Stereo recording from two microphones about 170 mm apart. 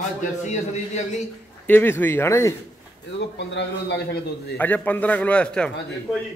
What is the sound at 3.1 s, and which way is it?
A man's voice, 90° left.